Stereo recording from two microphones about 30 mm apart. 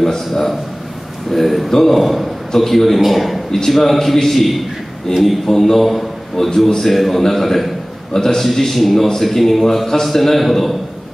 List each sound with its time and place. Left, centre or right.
0.0 s a man's voice: centre
2.0 s a man's voice: centre
8.1 s a man's voice: left
8.5 s a man's voice: centre